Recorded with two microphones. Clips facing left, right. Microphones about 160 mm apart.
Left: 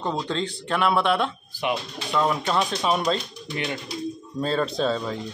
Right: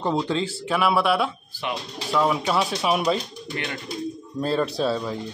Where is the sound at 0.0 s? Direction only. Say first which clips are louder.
Right 3 dB; 5° right (ahead or behind).